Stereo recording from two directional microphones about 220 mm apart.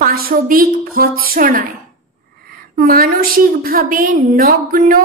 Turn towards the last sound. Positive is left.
turn(degrees=-40)  # may be behind; listen again after turning